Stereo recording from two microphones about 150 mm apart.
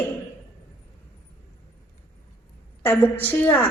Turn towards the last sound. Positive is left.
turn(degrees=10)  # may be behind; listen again after turning